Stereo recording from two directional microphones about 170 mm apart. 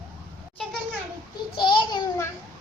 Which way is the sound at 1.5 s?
25° left (ahead or behind).